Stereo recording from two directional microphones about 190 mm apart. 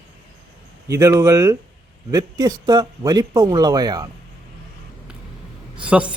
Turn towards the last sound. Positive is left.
turn(degrees=-5)  # may be behind; listen again after turning